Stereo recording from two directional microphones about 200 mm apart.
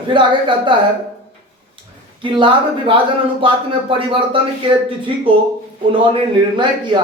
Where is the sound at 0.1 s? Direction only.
25° right (ahead or behind).